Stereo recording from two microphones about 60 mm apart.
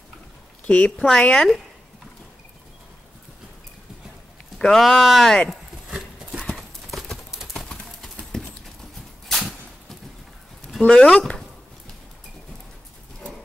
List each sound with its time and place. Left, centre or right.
0.7 s speech: centre
4.6 s speech: centre
5.5 s a sound: centre
6.5 s clip-clop: centre
9.3 s whip: centre
10.9 s speech: centre